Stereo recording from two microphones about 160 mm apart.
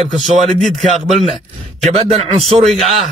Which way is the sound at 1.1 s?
45° right (ahead or behind).